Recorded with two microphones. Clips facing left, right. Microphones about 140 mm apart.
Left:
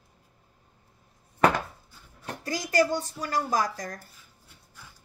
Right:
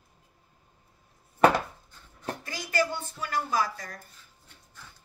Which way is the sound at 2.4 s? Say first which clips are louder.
Left 5 dB; 40° left (ahead or behind).